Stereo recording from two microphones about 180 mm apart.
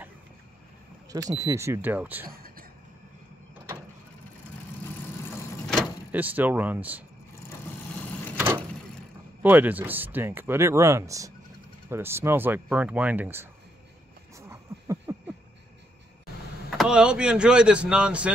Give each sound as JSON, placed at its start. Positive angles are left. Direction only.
{"t": 1.3, "sound": "speech", "side_deg": -20}
{"t": 2.2, "sound": "a sound", "side_deg": -55}
{"t": 4.8, "sound": "vehicle", "side_deg": 15}
{"t": 6.1, "sound": "speech", "side_deg": -10}
{"t": 9.4, "sound": "speech", "side_deg": -10}
{"t": 14.3, "sound": "a sound", "side_deg": -15}
{"t": 16.7, "sound": "speech", "side_deg": -5}